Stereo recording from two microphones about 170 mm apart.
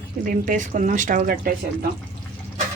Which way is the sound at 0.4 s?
45° right (ahead or behind).